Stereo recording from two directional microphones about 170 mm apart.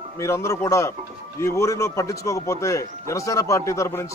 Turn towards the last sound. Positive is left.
turn(degrees=15)  # may be behind; listen again after turning